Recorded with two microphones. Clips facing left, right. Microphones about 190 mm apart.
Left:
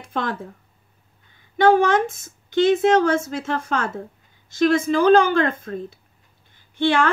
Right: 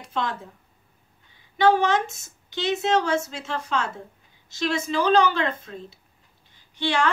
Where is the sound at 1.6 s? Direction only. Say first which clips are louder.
Left 4 dB; 50° left (ahead or behind).